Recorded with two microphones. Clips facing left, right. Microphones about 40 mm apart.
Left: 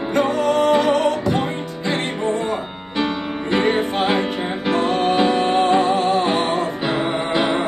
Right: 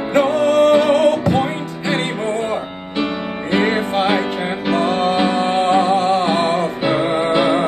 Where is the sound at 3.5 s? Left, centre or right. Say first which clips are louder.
Right 1 dB; right.